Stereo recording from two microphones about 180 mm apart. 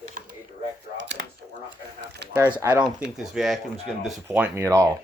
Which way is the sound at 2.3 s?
10° right (ahead or behind).